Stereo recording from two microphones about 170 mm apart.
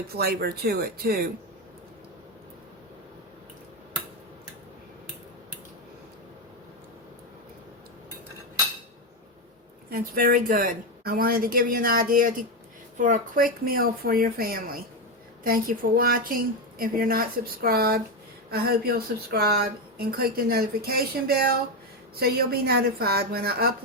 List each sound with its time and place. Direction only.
0.1 s speech: 65° right (ahead or behind)
9.9 s speech: 60° right (ahead or behind)